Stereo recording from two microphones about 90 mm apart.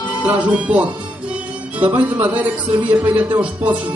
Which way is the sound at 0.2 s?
15° right (ahead or behind).